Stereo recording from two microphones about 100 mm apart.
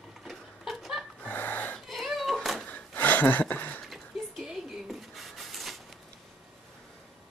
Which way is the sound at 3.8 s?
Centre (ahead or behind).